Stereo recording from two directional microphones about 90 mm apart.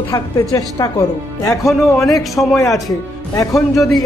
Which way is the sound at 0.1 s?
40° left (ahead or behind).